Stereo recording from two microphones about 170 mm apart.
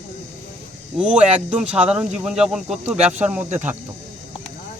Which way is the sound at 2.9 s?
40° right (ahead or behind).